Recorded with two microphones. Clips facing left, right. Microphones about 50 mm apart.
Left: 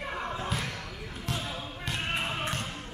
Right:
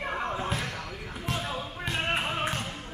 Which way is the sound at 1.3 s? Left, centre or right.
Right.